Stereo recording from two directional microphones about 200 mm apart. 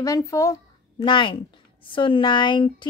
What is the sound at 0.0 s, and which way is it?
A woman's voice, 15° left (ahead or behind).